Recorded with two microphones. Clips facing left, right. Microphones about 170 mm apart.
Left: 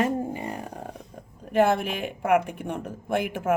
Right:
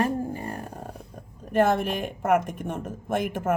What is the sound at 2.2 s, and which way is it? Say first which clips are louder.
Speech: left 1 dB; 65° left (ahead or behind).